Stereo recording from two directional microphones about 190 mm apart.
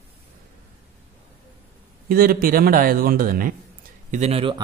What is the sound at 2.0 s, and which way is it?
Speech, 50° right (ahead or behind).